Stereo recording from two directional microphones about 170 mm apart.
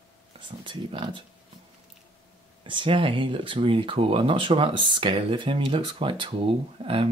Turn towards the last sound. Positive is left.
turn(degrees=-35)  # may be behind; listen again after turning